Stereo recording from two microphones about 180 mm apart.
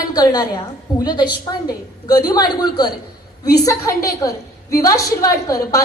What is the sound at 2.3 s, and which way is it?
A woman's voice, 20° left (ahead or behind).